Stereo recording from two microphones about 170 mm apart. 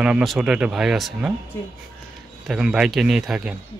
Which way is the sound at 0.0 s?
5° right (ahead or behind).